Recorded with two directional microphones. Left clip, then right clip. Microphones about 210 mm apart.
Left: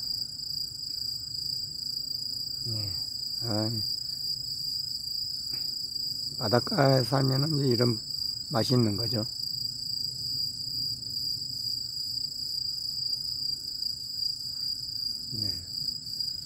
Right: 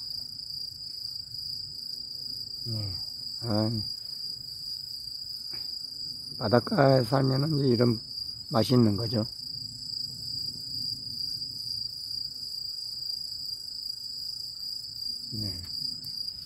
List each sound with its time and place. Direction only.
3.4 s cricket: 5° right (ahead or behind)
6.4 s cricket: centre (ahead or behind)